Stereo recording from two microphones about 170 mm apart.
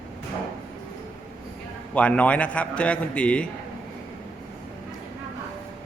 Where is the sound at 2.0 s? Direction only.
10° left (ahead or behind).